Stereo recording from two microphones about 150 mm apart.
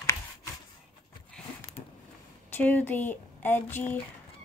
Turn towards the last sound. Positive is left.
turn(degrees=15)  # may be behind; listen again after turning